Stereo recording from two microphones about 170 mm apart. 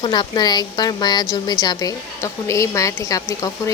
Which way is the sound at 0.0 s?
25° left (ahead or behind).